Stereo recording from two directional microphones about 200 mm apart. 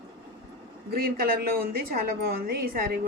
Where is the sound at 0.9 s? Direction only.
50° right (ahead or behind).